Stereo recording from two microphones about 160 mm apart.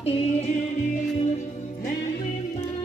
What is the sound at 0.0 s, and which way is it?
Music, 40° left (ahead or behind).